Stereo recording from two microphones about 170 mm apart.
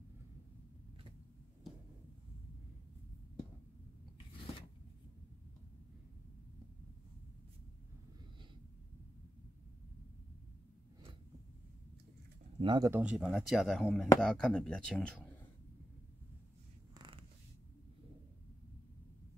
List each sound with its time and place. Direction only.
12.5 s speech: 25° right (ahead or behind)
12.9 s speech: 5° right (ahead or behind)